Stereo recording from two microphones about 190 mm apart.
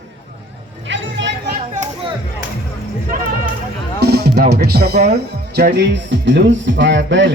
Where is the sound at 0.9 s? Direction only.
70° right (ahead or behind).